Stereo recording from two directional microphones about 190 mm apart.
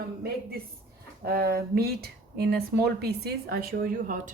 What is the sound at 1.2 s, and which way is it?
Speech, 55° right (ahead or behind).